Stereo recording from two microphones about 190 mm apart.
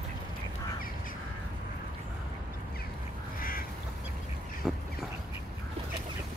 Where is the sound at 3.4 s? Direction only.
50° left (ahead or behind).